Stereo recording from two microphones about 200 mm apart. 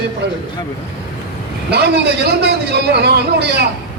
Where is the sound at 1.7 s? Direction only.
55° right (ahead or behind).